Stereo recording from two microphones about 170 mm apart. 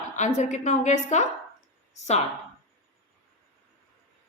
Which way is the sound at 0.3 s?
45° left (ahead or behind).